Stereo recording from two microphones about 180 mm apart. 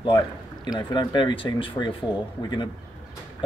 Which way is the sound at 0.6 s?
20° left (ahead or behind).